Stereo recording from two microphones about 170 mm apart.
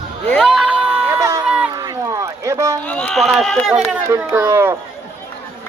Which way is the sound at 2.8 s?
5° left (ahead or behind).